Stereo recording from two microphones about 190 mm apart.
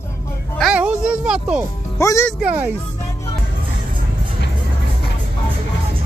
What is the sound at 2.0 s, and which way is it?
Speech, 15° left (ahead or behind).